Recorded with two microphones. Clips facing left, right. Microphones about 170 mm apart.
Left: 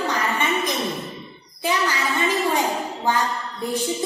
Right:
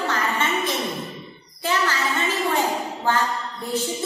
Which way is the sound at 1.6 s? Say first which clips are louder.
Left 1 dB; 15° left (ahead or behind).